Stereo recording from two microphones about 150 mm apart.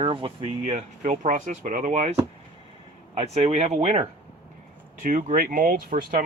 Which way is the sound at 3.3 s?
40° right (ahead or behind).